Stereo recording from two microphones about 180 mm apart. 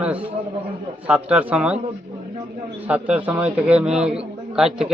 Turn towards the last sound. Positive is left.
turn(degrees=-5)  # may be behind; listen again after turning